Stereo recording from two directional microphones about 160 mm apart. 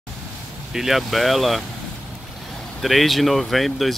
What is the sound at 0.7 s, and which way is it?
Speech, centre (ahead or behind).